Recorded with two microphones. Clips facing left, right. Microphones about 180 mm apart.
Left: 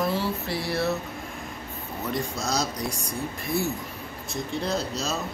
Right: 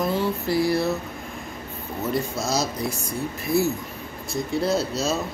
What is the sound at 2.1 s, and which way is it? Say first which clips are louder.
Speech: right 3 dB; 5° right (ahead or behind).